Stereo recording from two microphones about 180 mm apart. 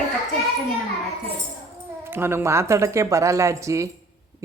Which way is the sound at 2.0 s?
15° right (ahead or behind).